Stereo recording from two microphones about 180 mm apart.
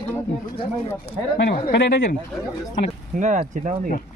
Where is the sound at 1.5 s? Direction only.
70° left (ahead or behind).